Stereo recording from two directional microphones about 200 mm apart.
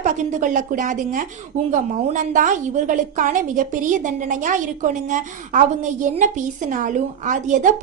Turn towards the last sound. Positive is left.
turn(degrees=-40)  # may be behind; listen again after turning